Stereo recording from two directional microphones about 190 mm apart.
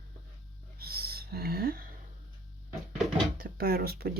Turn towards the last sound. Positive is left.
turn(degrees=-55)  # may be behind; listen again after turning